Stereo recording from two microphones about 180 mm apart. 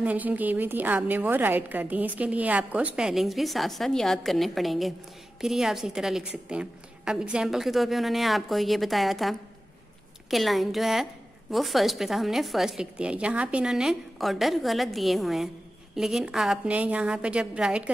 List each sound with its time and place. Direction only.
0.0 s a woman's voice: 10° right (ahead or behind)